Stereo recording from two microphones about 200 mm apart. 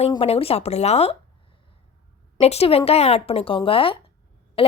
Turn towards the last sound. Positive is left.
turn(degrees=30)  # may be behind; listen again after turning